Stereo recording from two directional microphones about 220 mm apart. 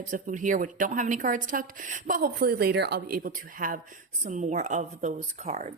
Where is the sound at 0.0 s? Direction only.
35° right (ahead or behind).